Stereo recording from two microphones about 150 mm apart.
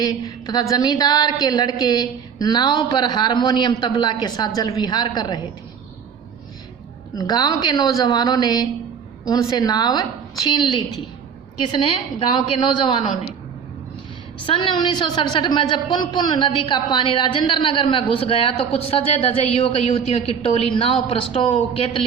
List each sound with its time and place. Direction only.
0.0 s a woman's voice: 25° left (ahead or behind)
7.2 s a woman's voice: 25° left (ahead or behind)
14.4 s a woman's voice: 35° left (ahead or behind)